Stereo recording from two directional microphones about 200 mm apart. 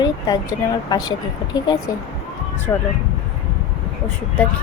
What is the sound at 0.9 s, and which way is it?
Speech, 20° left (ahead or behind).